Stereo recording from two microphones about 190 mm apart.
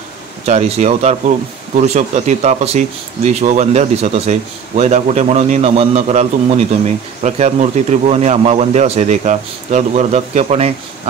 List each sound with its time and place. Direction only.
0.5 s speech: 35° right (ahead or behind)